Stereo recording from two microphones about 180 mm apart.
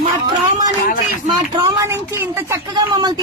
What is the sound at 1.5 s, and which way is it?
Speech, 20° right (ahead or behind).